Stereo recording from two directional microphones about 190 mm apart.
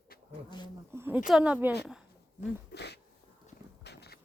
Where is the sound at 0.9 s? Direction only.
10° right (ahead or behind).